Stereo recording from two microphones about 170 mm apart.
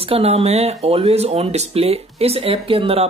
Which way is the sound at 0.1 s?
35° right (ahead or behind).